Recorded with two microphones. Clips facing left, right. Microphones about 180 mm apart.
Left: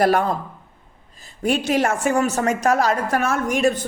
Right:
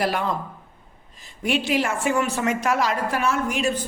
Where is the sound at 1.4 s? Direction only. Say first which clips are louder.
Left 3 dB; 45° left (ahead or behind).